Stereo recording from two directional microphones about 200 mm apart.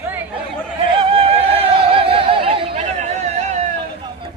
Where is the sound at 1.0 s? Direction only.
30° right (ahead or behind).